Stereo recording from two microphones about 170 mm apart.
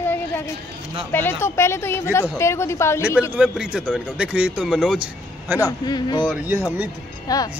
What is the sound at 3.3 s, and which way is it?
Speech, 5° right (ahead or behind).